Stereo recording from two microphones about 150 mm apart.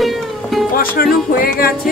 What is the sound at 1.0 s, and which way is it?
Music, 75° left (ahead or behind).